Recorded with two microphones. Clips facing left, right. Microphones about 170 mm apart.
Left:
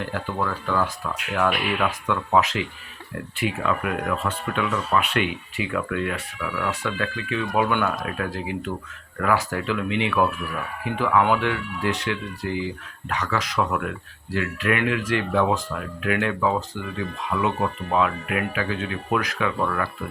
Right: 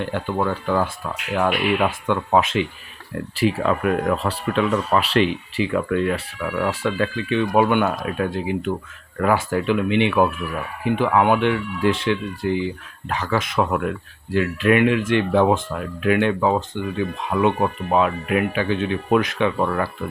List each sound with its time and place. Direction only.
0.0 s speech: 30° right (ahead or behind)
3.3 s speech: 35° right (ahead or behind)